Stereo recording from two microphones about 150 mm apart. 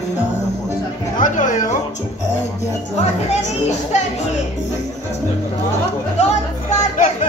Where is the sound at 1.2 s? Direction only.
60° left (ahead or behind).